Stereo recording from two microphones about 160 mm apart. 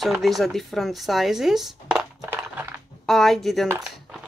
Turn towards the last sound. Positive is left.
turn(degrees=-20)  # may be behind; listen again after turning